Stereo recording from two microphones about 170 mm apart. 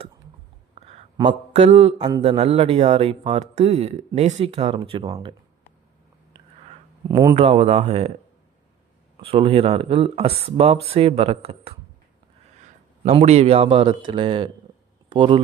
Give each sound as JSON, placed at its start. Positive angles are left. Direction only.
{"t": 1.5, "sound": "speech", "side_deg": -40}
{"t": 5.0, "sound": "speech", "side_deg": -20}
{"t": 6.3, "sound": "a sound", "side_deg": -25}
{"t": 7.1, "sound": "speech", "side_deg": -20}
{"t": 7.3, "sound": "speech", "side_deg": -35}
{"t": 9.2, "sound": "speech", "side_deg": -35}
{"t": 13.1, "sound": "speech", "side_deg": -40}